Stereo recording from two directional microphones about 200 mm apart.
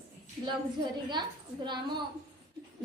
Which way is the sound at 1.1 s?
20° right (ahead or behind).